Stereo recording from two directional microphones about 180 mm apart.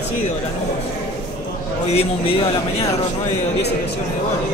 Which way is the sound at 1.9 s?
35° left (ahead or behind).